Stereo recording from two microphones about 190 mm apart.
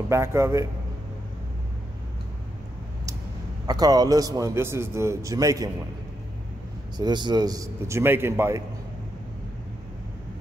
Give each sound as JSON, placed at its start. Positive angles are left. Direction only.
{"t": 0.1, "sound": "a man's voice", "side_deg": -15}
{"t": 3.6, "sound": "a man's voice", "side_deg": -20}
{"t": 7.0, "sound": "a man's voice", "side_deg": -25}